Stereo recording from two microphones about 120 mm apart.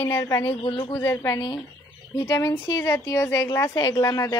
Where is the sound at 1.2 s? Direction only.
30° left (ahead or behind).